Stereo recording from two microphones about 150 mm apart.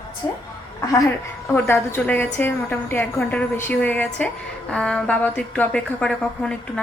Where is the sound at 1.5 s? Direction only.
15° left (ahead or behind).